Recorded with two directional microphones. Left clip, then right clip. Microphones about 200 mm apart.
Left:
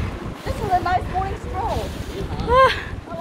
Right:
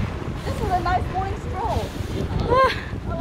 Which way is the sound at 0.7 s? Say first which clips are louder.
Left 3 dB; 15° left (ahead or behind).